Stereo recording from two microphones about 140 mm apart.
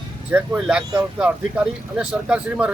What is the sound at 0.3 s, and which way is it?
Speech, 5° right (ahead or behind).